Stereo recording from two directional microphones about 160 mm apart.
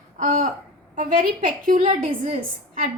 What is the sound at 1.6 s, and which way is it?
Speech, 55° right (ahead or behind).